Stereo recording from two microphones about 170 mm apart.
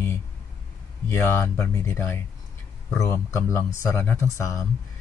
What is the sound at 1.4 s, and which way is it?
A man's voice, 15° left (ahead or behind).